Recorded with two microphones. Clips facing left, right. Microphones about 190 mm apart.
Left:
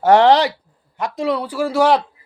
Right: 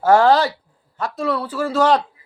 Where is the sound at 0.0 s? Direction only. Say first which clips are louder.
Left 2 dB; 20° left (ahead or behind).